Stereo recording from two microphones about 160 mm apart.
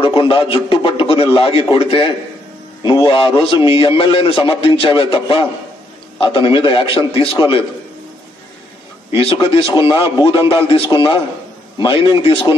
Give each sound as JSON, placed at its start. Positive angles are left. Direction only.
{"t": 0.0, "sound": "a man's voice", "side_deg": 30}
{"t": 9.1, "sound": "a man's voice", "side_deg": 35}